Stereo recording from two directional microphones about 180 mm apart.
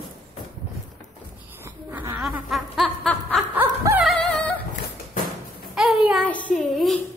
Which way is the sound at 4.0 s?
Centre (ahead or behind).